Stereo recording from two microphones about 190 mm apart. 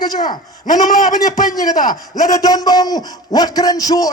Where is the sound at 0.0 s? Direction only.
20° left (ahead or behind).